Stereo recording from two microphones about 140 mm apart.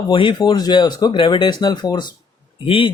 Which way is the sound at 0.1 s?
35° left (ahead or behind).